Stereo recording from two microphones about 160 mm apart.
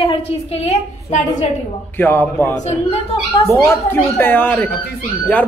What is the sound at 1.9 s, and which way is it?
Speech, 10° left (ahead or behind).